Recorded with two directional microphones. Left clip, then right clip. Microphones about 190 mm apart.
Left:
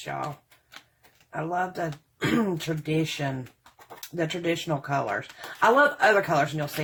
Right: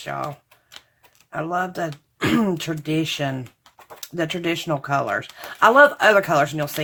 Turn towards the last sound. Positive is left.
turn(degrees=-30)  # may be behind; listen again after turning